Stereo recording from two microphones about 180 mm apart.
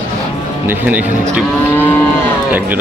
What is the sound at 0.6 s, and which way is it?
Speech, 10° right (ahead or behind).